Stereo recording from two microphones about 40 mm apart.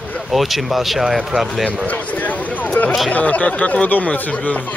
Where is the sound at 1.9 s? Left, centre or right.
Left.